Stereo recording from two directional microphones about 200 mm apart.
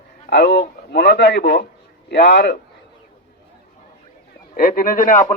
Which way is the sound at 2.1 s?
60° left (ahead or behind).